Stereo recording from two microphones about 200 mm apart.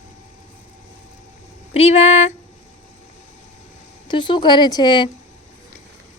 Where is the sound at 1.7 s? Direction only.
30° left (ahead or behind).